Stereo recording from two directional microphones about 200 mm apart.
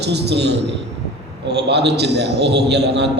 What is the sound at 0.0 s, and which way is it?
A man's voice, 55° right (ahead or behind).